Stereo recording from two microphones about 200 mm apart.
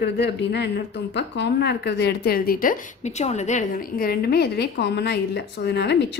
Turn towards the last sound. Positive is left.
turn(degrees=60)  # may be behind; listen again after turning